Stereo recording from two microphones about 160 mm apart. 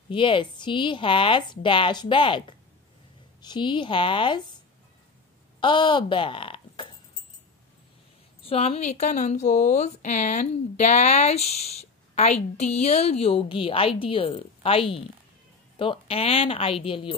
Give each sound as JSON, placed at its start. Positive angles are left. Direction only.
{"t": 0.1, "sound": "a woman's voice", "side_deg": 30}
{"t": 5.6, "sound": "speech", "side_deg": 30}
{"t": 8.4, "sound": "speech", "side_deg": 40}